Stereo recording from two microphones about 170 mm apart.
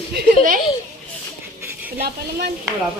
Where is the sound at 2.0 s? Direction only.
70° right (ahead or behind).